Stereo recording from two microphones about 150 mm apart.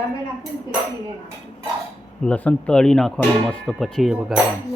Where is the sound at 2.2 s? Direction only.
10° left (ahead or behind).